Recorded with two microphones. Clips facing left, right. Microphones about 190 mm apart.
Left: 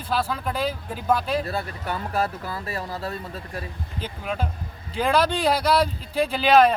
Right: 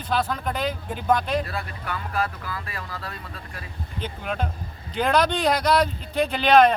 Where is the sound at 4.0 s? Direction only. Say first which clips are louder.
Even; centre (ahead or behind).